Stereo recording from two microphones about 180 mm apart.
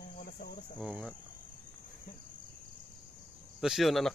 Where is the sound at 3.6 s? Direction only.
Centre (ahead or behind).